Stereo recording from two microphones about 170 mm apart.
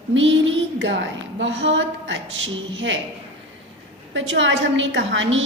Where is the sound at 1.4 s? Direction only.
90° right.